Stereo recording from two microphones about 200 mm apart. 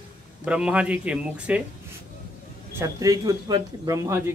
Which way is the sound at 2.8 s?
15° right (ahead or behind).